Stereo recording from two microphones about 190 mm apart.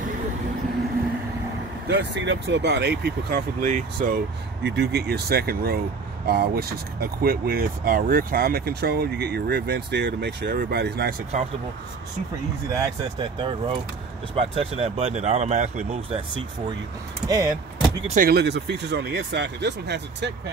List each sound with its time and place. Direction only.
1.9 s speech: 65° right (ahead or behind); by 4.2 s 45° right (ahead or behind)
4.6 s speech: 60° right (ahead or behind)
12.7 s speech: 20° right (ahead or behind)
18.1 s speech: 50° right (ahead or behind)